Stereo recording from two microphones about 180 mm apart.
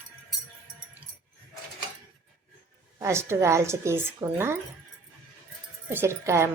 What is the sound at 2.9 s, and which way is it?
A woman's voice, 15° right (ahead or behind).